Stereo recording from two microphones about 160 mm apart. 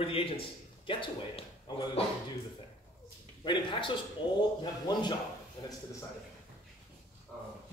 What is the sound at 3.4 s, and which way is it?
A man's voice, 30° left (ahead or behind).